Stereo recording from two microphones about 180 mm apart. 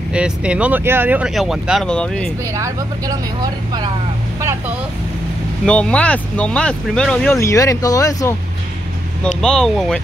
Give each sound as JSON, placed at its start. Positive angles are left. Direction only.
{"t": 0.1, "sound": "speech", "side_deg": -5}
{"t": 2.5, "sound": "speech", "side_deg": -20}
{"t": 5.7, "sound": "speech", "side_deg": 5}
{"t": 7.3, "sound": "speech", "side_deg": 15}
{"t": 9.2, "sound": "speech", "side_deg": 5}